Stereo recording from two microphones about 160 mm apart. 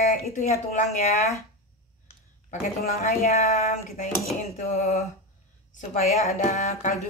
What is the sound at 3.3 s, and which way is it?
Speech, 45° left (ahead or behind).